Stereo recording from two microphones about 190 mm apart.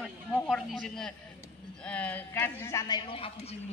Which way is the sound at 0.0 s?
Centre (ahead or behind).